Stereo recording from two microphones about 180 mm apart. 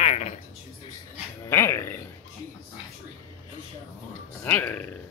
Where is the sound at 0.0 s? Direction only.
35° left (ahead or behind).